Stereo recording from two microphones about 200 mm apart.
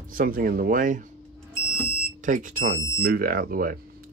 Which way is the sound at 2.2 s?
40° right (ahead or behind).